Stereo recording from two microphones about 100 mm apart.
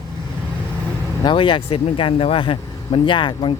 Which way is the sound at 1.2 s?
60° left (ahead or behind).